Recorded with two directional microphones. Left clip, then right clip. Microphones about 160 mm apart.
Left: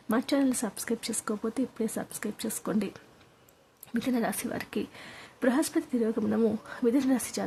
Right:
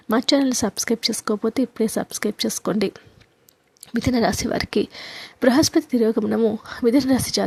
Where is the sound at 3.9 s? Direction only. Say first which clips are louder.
Right 10 dB; 35° right (ahead or behind).